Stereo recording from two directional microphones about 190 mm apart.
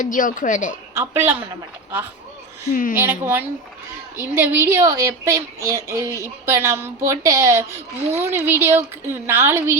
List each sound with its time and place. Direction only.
0.0 s a woman's voice: 45° left (ahead or behind)
0.9 s a woman's voice: 15° right (ahead or behind)
2.9 s a woman's voice: 10° right (ahead or behind)